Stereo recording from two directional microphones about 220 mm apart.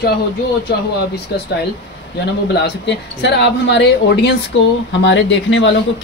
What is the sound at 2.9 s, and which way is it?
Speech, 50° left (ahead or behind).